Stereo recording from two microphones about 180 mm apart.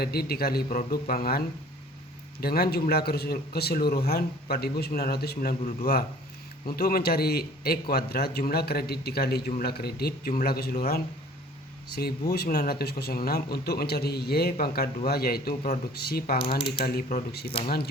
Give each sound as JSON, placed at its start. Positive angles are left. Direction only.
{"t": 0.0, "sound": "speech", "side_deg": 60}